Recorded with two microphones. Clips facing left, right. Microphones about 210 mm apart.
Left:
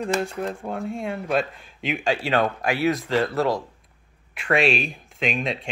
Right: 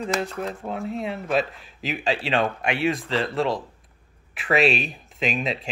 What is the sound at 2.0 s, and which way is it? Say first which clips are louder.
Speech: left 1 dB; 30° right (ahead or behind).